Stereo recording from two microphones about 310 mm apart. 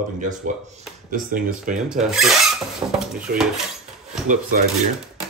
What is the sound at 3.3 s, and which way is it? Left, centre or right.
Speech, right.